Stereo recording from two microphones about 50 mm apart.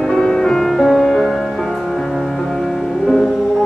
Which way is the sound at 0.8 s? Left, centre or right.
Centre.